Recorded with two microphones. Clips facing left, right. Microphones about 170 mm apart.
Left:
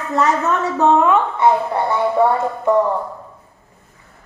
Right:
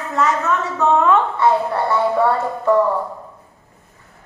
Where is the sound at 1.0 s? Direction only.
20° left (ahead or behind).